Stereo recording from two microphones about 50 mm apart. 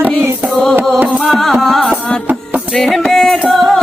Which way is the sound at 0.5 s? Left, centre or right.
Centre.